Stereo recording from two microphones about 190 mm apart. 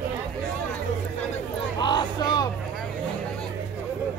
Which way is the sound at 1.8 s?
25° left (ahead or behind).